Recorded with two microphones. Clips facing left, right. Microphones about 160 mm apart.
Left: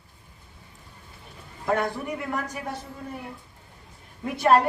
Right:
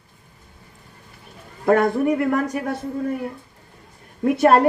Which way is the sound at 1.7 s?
65° right (ahead or behind).